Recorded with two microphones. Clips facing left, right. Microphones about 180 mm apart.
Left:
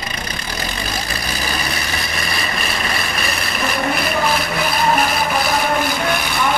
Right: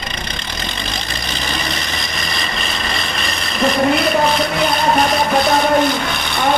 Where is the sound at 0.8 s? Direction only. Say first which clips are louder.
Left 1 dB; 10° left (ahead or behind).